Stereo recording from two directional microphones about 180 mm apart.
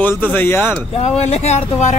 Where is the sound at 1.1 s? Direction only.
35° left (ahead or behind).